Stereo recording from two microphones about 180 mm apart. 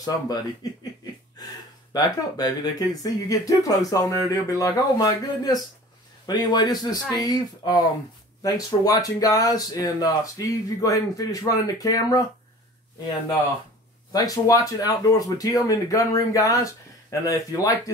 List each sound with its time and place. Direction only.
0.6 s speech: 20° left (ahead or behind)
2.0 s speech: 20° left (ahead or behind)
14.1 s speech: 20° left (ahead or behind)